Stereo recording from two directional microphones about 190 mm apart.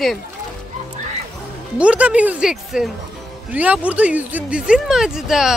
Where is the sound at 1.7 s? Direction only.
5° right (ahead or behind).